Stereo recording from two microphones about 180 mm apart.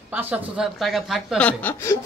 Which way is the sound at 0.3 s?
Centre (ahead or behind).